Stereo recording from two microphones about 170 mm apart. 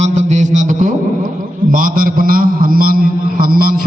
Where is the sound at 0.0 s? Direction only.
45° right (ahead or behind).